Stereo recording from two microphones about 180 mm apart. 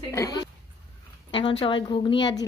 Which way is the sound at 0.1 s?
20° left (ahead or behind).